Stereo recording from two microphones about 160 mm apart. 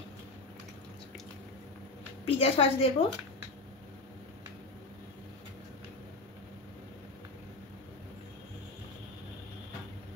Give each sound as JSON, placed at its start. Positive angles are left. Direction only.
{"t": 2.2, "sound": "a woman's voice", "side_deg": 40}